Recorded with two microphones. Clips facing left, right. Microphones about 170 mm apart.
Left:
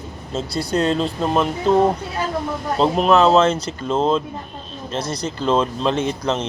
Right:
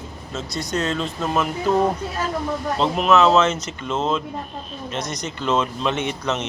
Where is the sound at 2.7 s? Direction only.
35° left (ahead or behind).